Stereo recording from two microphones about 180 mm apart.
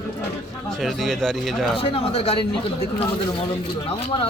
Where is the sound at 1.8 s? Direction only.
30° left (ahead or behind).